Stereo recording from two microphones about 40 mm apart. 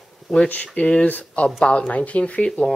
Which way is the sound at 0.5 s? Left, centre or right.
Left.